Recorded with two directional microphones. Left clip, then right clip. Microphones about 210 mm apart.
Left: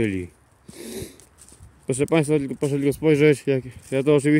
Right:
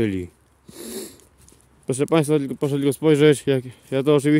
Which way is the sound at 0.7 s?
15° right (ahead or behind).